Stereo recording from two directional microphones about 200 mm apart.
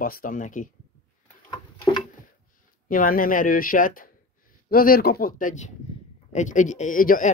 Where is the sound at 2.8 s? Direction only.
45° left (ahead or behind).